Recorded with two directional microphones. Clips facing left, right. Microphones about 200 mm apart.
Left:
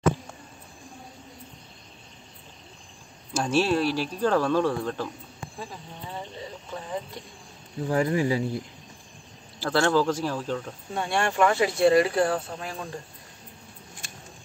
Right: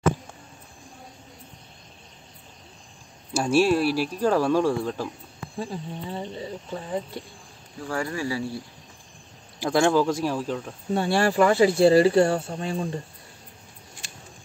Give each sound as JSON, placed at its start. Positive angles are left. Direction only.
{"t": 3.3, "sound": "speech", "side_deg": -10}
{"t": 5.6, "sound": "speech", "side_deg": -30}
{"t": 7.8, "sound": "speech", "side_deg": 20}
{"t": 9.6, "sound": "speech", "side_deg": -15}
{"t": 10.9, "sound": "speech", "side_deg": -35}